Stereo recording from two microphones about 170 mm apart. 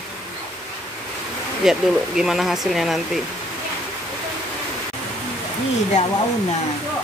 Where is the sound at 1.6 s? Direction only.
Centre (ahead or behind).